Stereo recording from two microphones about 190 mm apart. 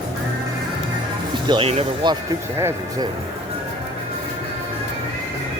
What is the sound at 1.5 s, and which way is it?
Speech, 30° right (ahead or behind).